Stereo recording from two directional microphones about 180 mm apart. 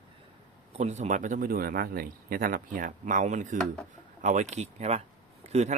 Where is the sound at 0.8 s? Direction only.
40° right (ahead or behind).